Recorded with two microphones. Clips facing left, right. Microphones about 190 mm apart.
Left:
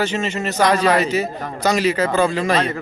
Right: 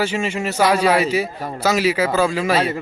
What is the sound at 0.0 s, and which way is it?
A man's voice, 10° right (ahead or behind).